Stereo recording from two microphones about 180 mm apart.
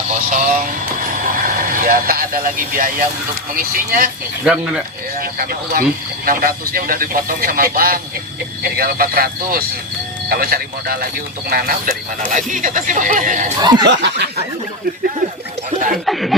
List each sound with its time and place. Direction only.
0.1 s vehicle: 50° right (ahead or behind)
3.5 s speech: 50° right (ahead or behind)
4.4 s speech: 5° right (ahead or behind)
5.1 s speech: 50° right (ahead or behind)
13.6 s speech: 25° right (ahead or behind)
13.8 s snicker: 75° right (ahead or behind)
15.9 s speech: centre (ahead or behind)